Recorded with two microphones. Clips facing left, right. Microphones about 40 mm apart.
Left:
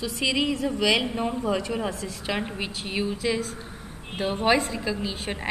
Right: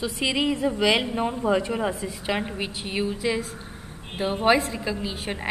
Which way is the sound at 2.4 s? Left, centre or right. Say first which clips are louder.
Right 1 dB; centre.